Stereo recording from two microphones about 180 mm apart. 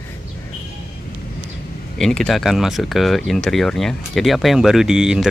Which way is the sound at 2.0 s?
5° left (ahead or behind).